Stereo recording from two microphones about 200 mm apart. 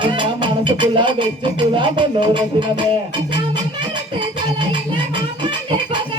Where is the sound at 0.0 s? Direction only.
25° right (ahead or behind).